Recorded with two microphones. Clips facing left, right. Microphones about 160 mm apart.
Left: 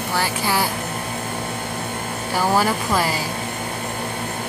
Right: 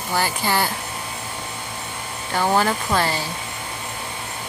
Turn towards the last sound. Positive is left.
turn(degrees=5)  # may be behind; listen again after turning